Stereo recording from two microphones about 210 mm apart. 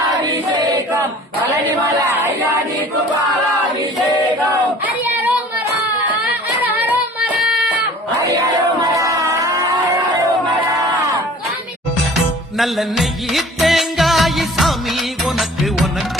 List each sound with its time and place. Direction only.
0.5 s choir: 20° right (ahead or behind)
4.9 s child singing: 10° right (ahead or behind)
6.6 s child singing: 10° right (ahead or behind)
8.8 s a sound: 15° right (ahead or behind)
12.5 s music: centre (ahead or behind)